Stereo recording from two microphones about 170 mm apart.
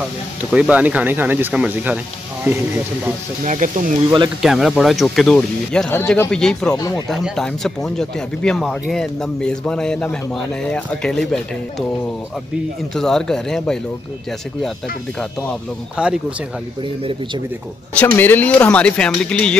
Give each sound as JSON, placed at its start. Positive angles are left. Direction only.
{"t": 0.5, "sound": "speech", "side_deg": -5}
{"t": 3.4, "sound": "speech", "side_deg": -50}
{"t": 4.4, "sound": "speech", "side_deg": 0}
{"t": 12.9, "sound": "speech", "side_deg": 5}
{"t": 16.0, "sound": "speech", "side_deg": -5}
{"t": 17.9, "sound": "speech", "side_deg": 10}